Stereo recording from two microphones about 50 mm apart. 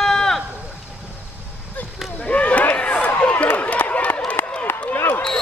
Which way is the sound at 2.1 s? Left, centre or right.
Left.